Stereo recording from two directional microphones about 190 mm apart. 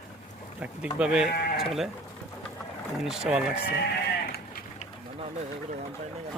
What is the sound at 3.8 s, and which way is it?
Sheep, 55° left (ahead or behind).